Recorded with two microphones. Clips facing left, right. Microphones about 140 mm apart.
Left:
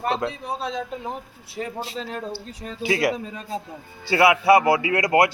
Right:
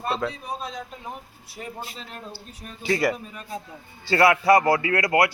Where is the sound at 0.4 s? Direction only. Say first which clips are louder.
Left 5 dB; 80° left.